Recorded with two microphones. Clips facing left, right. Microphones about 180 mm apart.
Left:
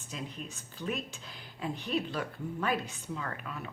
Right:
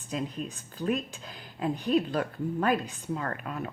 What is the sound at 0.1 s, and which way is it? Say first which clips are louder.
Speech: right 8 dB; 45° right (ahead or behind).